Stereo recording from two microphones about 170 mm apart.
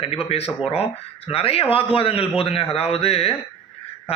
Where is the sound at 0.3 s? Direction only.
35° left (ahead or behind).